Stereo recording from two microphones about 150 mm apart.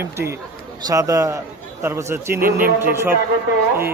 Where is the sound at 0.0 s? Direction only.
15° right (ahead or behind).